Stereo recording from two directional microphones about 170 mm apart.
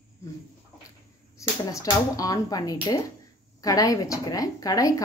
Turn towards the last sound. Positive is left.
turn(degrees=20)  # may be behind; listen again after turning